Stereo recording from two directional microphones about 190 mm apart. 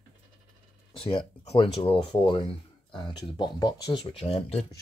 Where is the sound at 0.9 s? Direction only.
30° left (ahead or behind).